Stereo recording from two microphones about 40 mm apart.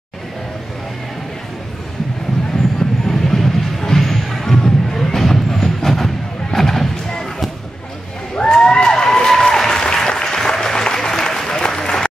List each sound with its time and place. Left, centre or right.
3.1 s music: centre
8.4 s applause: centre